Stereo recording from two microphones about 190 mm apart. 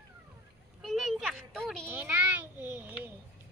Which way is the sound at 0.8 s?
Centre (ahead or behind).